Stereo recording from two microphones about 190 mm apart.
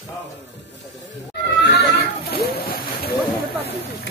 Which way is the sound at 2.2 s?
55° left (ahead or behind).